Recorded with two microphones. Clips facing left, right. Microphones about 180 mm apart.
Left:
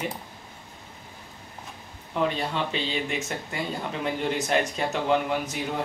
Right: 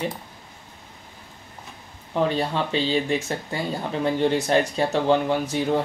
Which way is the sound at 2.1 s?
35° right (ahead or behind).